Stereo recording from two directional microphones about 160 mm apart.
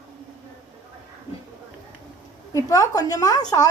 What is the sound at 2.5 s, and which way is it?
Speech, 20° left (ahead or behind).